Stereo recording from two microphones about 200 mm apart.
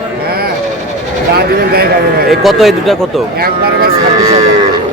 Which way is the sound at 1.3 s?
50° right (ahead or behind).